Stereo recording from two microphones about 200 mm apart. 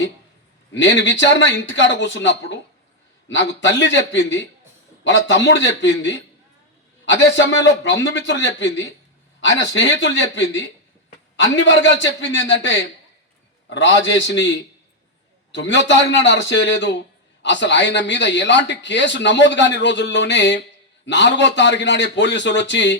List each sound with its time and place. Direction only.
0.7 s speech: 65° left (ahead or behind)
13.7 s speech: 65° left (ahead or behind)